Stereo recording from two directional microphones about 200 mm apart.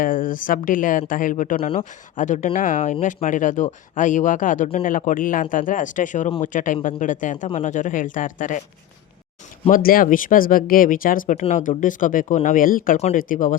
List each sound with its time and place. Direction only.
0.0 s speech: 45° left (ahead or behind)
9.6 s speech: 45° left (ahead or behind)